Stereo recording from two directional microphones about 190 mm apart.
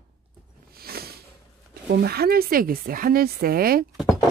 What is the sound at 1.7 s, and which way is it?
Speech, 55° right (ahead or behind).